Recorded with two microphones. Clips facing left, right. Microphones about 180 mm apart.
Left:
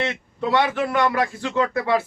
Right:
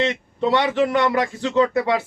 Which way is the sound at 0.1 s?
20° right (ahead or behind).